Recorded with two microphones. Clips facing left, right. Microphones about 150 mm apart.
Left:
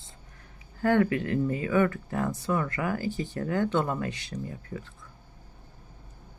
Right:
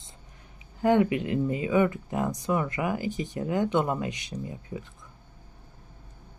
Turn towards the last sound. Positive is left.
turn(degrees=-15)  # may be behind; listen again after turning